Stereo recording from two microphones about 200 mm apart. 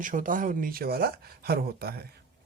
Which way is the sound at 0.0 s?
40° right (ahead or behind).